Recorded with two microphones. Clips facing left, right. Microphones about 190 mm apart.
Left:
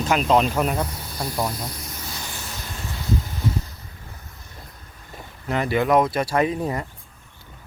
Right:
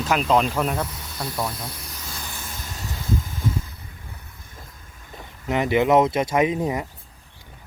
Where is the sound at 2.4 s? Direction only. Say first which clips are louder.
Left 1 dB; 50° right (ahead or behind).